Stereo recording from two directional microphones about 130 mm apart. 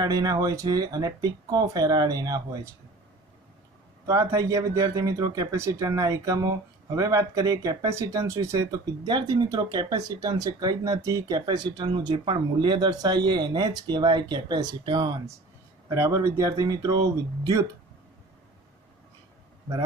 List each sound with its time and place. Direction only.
0.0 s speech: 30° right (ahead or behind)
4.1 s speech: 25° right (ahead or behind)